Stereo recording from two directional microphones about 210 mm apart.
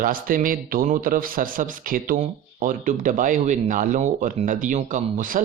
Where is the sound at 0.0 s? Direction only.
40° right (ahead or behind).